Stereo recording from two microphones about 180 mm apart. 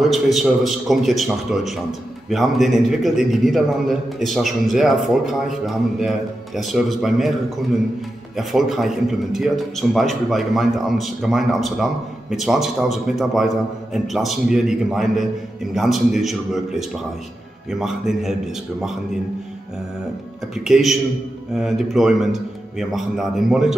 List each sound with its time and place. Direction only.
0.1 s a man's voice: centre (ahead or behind)
20.5 s a man's voice: 5° right (ahead or behind)